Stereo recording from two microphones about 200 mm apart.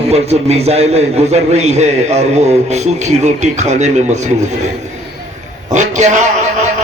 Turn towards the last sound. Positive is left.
turn(degrees=-35)  # may be behind; listen again after turning